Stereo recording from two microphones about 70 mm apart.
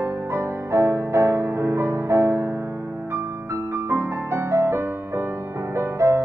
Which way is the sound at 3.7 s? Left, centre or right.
Right.